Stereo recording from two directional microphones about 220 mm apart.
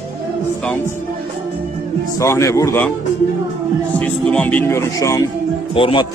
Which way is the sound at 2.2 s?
15° left (ahead or behind).